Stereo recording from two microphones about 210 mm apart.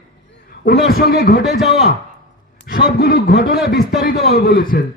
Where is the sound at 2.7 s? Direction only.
45° left (ahead or behind).